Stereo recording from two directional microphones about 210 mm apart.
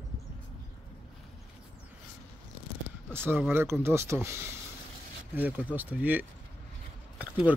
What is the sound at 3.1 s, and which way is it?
Speech, 10° right (ahead or behind).